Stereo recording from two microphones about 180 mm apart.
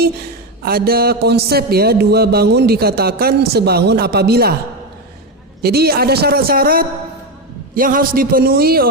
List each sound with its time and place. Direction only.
0.6 s a man's voice: 55° right (ahead or behind)
5.6 s a man's voice: 60° right (ahead or behind)